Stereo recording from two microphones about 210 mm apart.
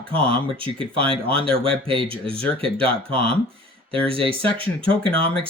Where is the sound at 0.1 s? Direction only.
25° right (ahead or behind).